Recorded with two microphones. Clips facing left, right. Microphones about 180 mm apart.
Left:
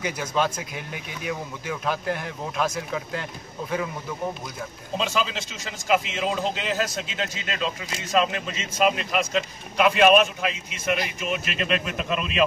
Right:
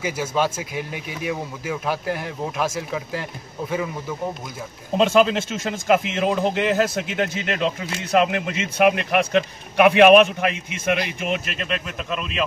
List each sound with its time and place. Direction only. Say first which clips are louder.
0.0 s speech: right 3 dB; 5° right (ahead or behind)
4.9 s speech: right 10 dB; 55° right (ahead or behind)
11.7 s a man's voice: left 1 dB; 10° left (ahead or behind)